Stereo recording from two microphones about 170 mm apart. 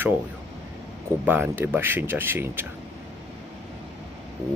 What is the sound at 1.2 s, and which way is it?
Speech, 10° right (ahead or behind).